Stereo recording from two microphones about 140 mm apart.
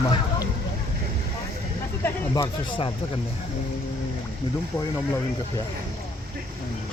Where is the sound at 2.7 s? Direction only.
35° left (ahead or behind).